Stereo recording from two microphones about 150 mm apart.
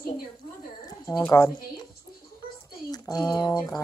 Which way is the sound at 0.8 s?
25° left (ahead or behind).